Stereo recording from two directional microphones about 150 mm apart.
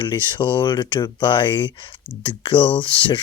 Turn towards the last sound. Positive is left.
turn(degrees=35)  # may be behind; listen again after turning